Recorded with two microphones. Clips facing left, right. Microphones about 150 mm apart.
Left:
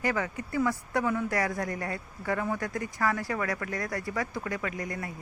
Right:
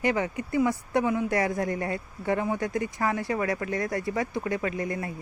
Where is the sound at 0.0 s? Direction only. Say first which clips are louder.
Right 4 dB; 20° right (ahead or behind).